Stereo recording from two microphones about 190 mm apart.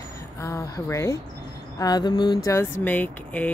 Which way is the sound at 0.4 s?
15° left (ahead or behind).